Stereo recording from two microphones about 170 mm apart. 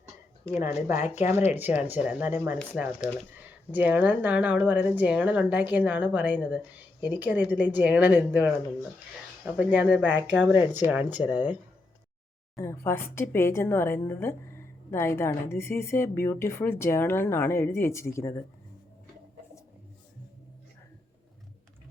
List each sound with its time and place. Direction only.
1.0 s speech: 40° left (ahead or behind)
1.5 s speech: 10° right (ahead or behind)
12.5 s a woman's voice: 15° left (ahead or behind)